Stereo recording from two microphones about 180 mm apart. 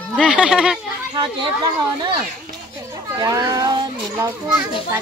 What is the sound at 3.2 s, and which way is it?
Children playing, 20° right (ahead or behind).